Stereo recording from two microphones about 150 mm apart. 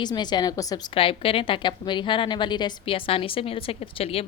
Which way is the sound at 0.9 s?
35° left (ahead or behind).